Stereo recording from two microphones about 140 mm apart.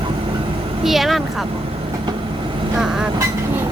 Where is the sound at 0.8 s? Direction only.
Centre (ahead or behind).